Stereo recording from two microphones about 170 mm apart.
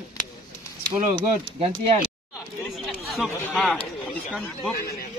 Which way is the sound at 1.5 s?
35° right (ahead or behind).